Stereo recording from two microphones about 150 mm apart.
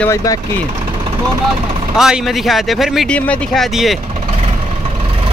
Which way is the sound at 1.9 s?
5° right (ahead or behind).